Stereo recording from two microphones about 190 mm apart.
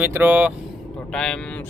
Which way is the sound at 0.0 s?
10° right (ahead or behind).